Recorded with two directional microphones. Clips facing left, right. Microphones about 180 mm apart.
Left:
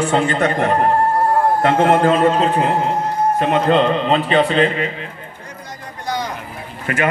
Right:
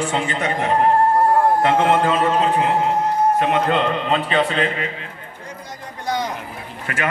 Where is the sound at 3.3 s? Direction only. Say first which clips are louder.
Left 3 dB; 35° left (ahead or behind).